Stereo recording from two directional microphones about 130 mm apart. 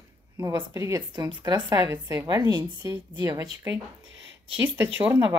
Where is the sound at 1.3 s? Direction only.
35° right (ahead or behind); by 2.2 s 20° right (ahead or behind).